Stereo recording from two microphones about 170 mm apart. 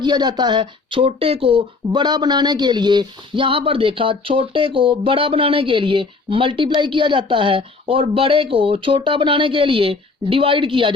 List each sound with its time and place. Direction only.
0.0 s speech: 25° right (ahead or behind)